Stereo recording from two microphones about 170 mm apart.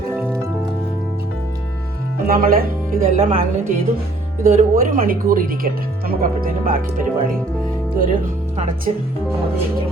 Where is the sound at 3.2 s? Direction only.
35° right (ahead or behind).